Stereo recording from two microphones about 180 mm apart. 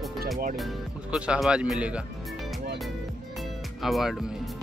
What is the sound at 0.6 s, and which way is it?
Speech, 5° right (ahead or behind).